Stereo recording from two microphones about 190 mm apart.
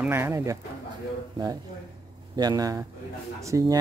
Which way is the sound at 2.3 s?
20° right (ahead or behind).